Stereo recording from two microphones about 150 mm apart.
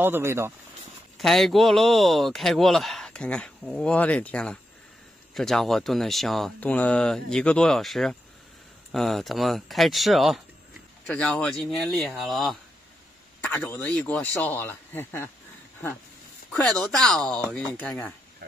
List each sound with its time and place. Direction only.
0.0 s speech: 15° right (ahead or behind)
1.1 s speech: centre (ahead or behind)
13.4 s speech: 15° left (ahead or behind)
16.5 s speech: 5° left (ahead or behind)